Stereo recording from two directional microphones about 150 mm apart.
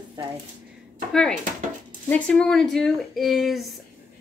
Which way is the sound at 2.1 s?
5° left (ahead or behind).